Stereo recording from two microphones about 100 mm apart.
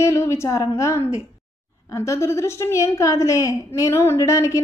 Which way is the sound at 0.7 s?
25° left (ahead or behind).